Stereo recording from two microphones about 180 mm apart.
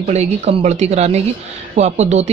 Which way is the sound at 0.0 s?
40° right (ahead or behind).